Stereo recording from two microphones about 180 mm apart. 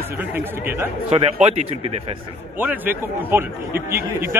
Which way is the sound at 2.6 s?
10° right (ahead or behind).